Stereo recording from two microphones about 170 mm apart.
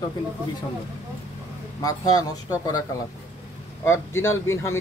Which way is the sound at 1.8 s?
20° left (ahead or behind).